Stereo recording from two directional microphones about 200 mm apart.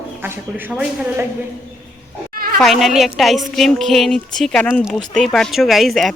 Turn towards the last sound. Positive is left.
turn(degrees=0)  # may be behind; listen again after turning